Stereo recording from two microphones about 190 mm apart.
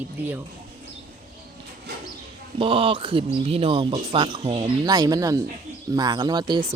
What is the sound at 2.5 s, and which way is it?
Speech, 30° right (ahead or behind).